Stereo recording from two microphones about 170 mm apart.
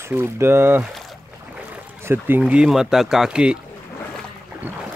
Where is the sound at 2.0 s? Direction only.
10° right (ahead or behind).